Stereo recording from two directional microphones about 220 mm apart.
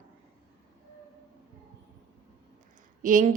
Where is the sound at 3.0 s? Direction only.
35° right (ahead or behind).